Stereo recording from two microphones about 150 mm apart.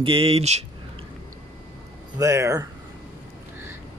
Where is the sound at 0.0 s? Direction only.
40° right (ahead or behind).